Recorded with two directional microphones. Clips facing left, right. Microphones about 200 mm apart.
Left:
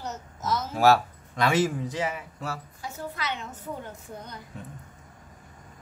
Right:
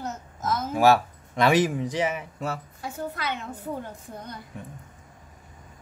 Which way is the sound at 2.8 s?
50° right (ahead or behind).